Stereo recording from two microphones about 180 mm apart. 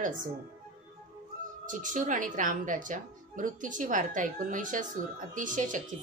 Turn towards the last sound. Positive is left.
turn(degrees=-45)  # may be behind; listen again after turning